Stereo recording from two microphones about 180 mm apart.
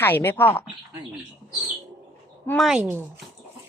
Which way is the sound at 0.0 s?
10° left (ahead or behind).